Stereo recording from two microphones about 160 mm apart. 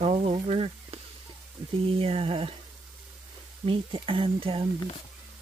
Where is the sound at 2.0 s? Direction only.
35° right (ahead or behind).